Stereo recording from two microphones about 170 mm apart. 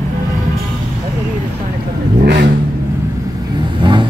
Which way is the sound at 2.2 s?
80° right.